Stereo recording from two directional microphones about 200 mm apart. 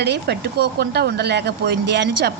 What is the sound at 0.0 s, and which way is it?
Speech, 55° right (ahead or behind).